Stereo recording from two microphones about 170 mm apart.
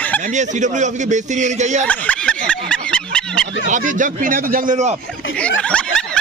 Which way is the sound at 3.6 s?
50° right (ahead or behind).